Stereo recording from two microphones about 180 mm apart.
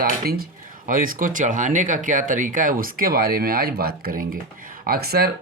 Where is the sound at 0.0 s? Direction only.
50° right (ahead or behind).